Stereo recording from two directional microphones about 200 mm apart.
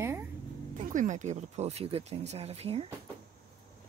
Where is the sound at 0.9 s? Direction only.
40° right (ahead or behind).